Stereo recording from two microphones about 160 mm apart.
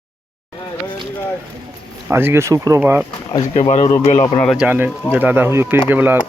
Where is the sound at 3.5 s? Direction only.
45° left (ahead or behind).